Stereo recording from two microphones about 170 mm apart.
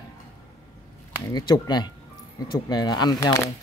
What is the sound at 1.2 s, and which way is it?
Speech, 25° left (ahead or behind).